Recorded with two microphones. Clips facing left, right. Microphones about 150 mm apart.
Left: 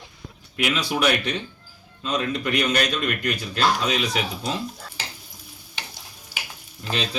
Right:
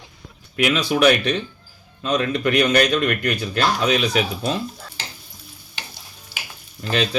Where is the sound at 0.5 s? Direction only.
65° right (ahead or behind).